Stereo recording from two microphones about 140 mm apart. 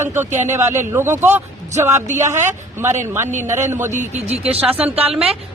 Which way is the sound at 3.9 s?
55° right (ahead or behind).